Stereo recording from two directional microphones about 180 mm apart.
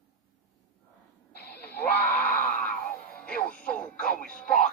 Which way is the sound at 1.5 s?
10° left (ahead or behind).